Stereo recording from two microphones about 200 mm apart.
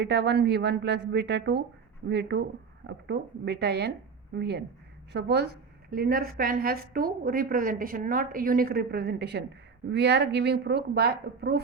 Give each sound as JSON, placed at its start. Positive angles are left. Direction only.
{"t": 0.0, "sound": "a woman's voice", "side_deg": -55}